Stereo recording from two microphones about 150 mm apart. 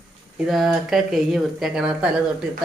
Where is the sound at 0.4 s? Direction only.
Centre (ahead or behind).